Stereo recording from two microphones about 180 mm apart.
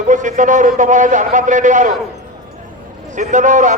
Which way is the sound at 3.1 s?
45° right (ahead or behind).